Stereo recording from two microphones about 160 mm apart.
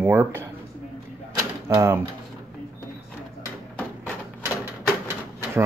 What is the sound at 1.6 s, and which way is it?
Speech, 15° right (ahead or behind).